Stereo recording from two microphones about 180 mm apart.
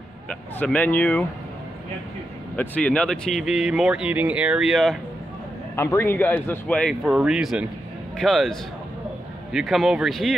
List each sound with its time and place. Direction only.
0.3 s speech: 5° left (ahead or behind)
2.5 s speech: 10° left (ahead or behind)
5.8 s speech: 15° left (ahead or behind)